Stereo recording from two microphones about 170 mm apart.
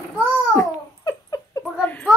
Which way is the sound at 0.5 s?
20° left (ahead or behind).